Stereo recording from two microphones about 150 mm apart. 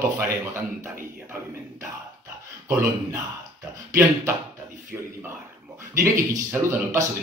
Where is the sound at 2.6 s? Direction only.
15° right (ahead or behind).